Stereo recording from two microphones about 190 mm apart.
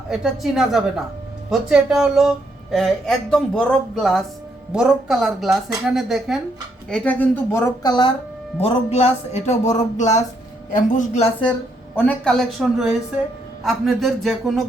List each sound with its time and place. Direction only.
0.1 s speech: centre (ahead or behind)
7.8 s speech: 20° left (ahead or behind)
8.6 s speech: 35° left (ahead or behind)
11.9 s speech: 5° left (ahead or behind)